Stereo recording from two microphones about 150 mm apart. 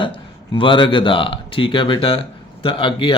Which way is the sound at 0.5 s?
35° left (ahead or behind).